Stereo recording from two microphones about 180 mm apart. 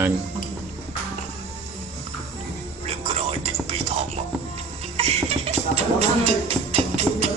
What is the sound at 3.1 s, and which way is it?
Music, 35° right (ahead or behind).